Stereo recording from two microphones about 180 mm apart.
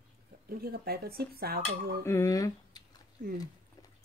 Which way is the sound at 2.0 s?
15° left (ahead or behind).